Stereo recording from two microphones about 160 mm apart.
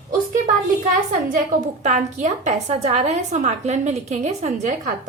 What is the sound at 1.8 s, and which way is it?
A woman's voice, 50° right (ahead or behind).